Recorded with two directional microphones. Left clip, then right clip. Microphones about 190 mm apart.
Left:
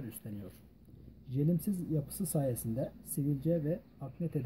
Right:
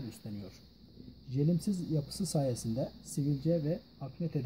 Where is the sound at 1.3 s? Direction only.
20° right (ahead or behind).